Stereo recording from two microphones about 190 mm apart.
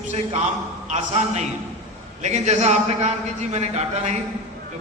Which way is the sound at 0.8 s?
35° right (ahead or behind).